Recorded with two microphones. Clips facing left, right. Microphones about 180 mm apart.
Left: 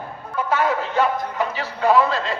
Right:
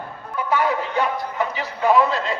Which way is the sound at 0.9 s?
15° right (ahead or behind).